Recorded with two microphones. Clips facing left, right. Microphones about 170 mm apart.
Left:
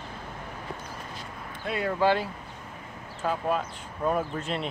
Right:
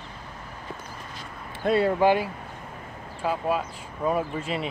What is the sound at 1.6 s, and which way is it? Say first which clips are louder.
Speech: right 8 dB; 35° right (ahead or behind).